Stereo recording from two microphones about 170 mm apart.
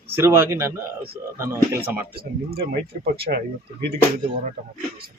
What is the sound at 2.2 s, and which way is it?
Speech, 65° right (ahead or behind).